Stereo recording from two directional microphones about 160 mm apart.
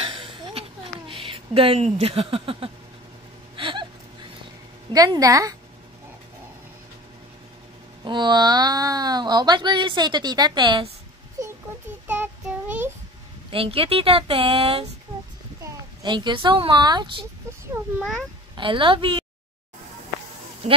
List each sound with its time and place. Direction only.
0.0 s a sound: 30° right (ahead or behind)
4.9 s speech: 25° right (ahead or behind)
8.0 s speech: 30° right (ahead or behind)
12.1 s child singing: 10° right (ahead or behind)
13.5 s speech: 35° right (ahead or behind)
17.8 s a sound: 15° right (ahead or behind)
18.6 s speech: 30° right (ahead or behind)